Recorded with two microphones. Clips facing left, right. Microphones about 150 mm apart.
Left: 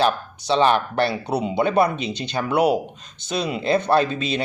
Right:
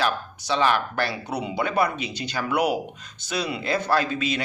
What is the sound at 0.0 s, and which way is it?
Speech, 25° left (ahead or behind).